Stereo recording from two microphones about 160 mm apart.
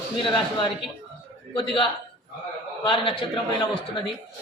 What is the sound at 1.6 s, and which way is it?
Speech, 30° left (ahead or behind).